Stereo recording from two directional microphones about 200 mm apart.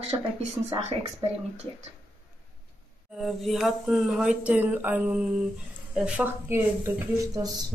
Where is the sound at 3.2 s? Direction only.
Centre (ahead or behind).